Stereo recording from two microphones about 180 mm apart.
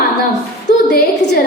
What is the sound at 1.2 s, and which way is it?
Speech, 75° left (ahead or behind).